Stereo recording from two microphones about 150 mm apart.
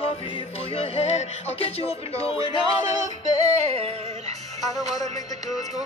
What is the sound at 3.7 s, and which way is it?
Music, 45° right (ahead or behind).